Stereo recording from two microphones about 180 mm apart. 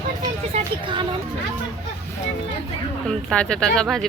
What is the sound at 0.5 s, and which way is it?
Vehicle, 25° right (ahead or behind).